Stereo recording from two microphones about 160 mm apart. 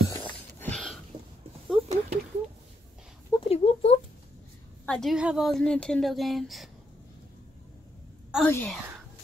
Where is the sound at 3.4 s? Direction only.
40° left (ahead or behind).